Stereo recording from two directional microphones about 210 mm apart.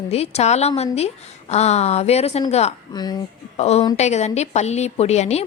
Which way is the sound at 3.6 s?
30° left (ahead or behind).